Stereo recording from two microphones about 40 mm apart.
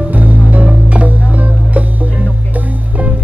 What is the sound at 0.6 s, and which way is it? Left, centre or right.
Music, right.